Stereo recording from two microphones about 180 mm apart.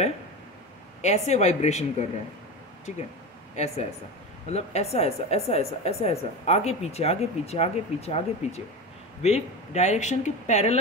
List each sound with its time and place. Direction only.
1.0 s a woman's voice: 40° left (ahead or behind)
3.5 s a woman's voice: 35° left (ahead or behind)